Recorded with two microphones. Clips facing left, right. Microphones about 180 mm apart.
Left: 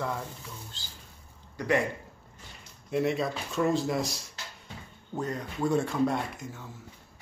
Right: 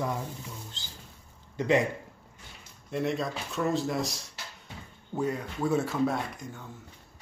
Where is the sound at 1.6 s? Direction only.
25° right (ahead or behind).